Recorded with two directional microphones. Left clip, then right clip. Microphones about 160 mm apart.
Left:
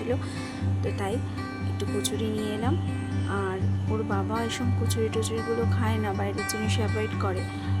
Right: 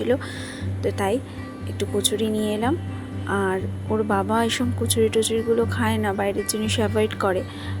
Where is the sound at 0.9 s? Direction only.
30° right (ahead or behind).